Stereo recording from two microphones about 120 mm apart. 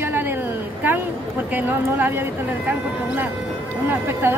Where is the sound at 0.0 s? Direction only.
20° right (ahead or behind).